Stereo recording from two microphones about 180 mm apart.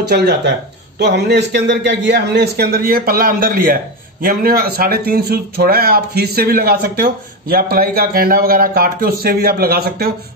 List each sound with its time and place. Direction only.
0.1 s a man's voice: 65° right (ahead or behind)